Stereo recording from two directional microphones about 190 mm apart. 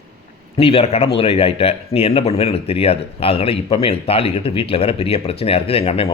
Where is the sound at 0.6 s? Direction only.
35° left (ahead or behind).